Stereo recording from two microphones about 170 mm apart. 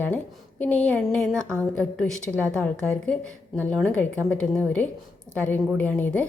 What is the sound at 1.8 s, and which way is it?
A woman's voice, 5° left (ahead or behind).